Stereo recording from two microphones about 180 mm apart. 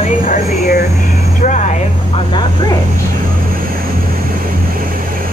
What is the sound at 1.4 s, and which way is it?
Vehicle, 45° left (ahead or behind).